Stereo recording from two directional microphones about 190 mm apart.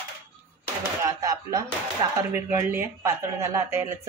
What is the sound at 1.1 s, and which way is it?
Speech, 20° right (ahead or behind).